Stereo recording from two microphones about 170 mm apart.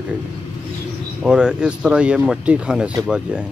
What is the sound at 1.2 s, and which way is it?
Speech, 5° right (ahead or behind).